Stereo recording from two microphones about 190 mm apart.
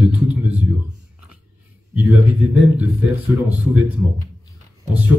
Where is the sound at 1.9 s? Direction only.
10° right (ahead or behind).